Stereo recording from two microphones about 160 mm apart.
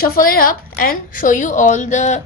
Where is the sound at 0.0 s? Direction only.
65° left (ahead or behind).